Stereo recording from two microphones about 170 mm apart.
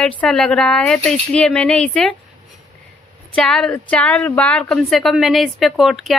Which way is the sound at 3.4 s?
5° left (ahead or behind).